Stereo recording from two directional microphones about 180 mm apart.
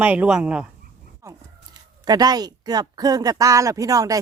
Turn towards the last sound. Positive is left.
turn(degrees=-20)  # may be behind; listen again after turning